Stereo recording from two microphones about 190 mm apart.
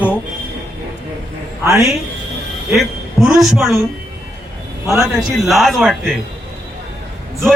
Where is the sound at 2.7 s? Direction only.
Centre (ahead or behind).